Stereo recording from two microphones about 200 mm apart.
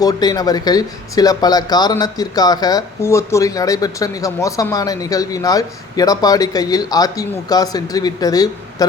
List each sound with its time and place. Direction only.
0.0 s speech: 20° left (ahead or behind)